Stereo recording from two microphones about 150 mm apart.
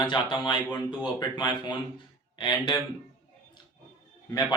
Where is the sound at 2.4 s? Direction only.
25° left (ahead or behind).